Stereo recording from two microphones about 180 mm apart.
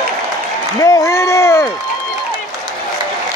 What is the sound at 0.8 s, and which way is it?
Run, 15° left (ahead or behind).